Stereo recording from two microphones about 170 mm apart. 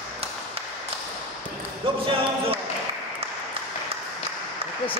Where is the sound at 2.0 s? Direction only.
35° right (ahead or behind).